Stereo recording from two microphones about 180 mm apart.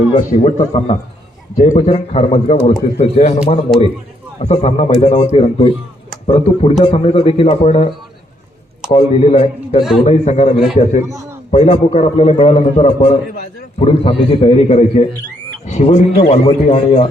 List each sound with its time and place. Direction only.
0.2 s a man's voice: 40° left (ahead or behind)
4.4 s a man's voice: 35° left (ahead or behind)
8.9 s a man's voice: 30° left (ahead or behind)
11.0 s a man's voice: 15° right (ahead or behind)
11.5 s a man's voice: 35° left (ahead or behind)